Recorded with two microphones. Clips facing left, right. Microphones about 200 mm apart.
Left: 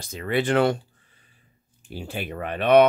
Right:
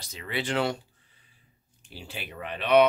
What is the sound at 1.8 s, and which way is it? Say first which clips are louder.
Speech: left 9 dB; 50° left (ahead or behind).